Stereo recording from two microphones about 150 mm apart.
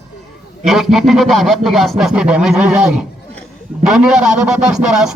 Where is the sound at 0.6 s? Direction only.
Centre (ahead or behind).